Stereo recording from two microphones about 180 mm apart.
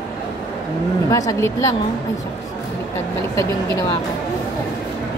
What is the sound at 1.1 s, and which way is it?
Speech, 20° left (ahead or behind).